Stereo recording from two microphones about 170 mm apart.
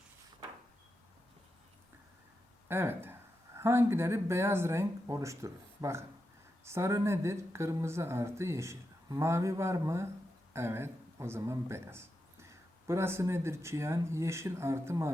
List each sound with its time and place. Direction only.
2.6 s speech: 15° right (ahead or behind)